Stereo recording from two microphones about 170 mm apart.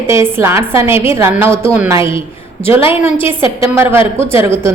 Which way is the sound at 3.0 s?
40° left (ahead or behind).